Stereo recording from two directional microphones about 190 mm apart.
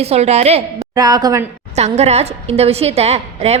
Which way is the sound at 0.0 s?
35° right (ahead or behind).